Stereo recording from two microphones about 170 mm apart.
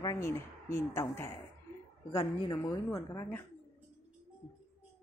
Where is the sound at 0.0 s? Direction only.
20° left (ahead or behind).